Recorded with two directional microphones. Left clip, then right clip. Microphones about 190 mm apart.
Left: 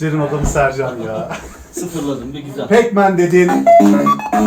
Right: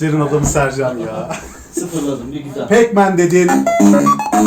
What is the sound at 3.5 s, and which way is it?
Music, 25° right (ahead or behind).